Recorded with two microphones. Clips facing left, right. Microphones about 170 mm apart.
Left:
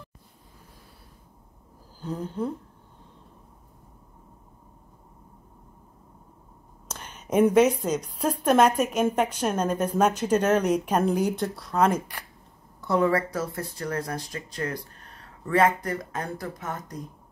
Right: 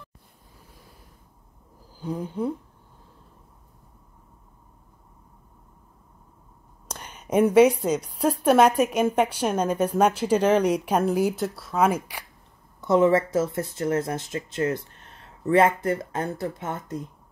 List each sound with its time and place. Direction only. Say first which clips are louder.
2.0 s a sound: right 2 dB; 10° right (ahead or behind)
6.9 s a woman's voice: right 2 dB; 10° right (ahead or behind)
12.8 s speech: right 4 dB; 20° right (ahead or behind)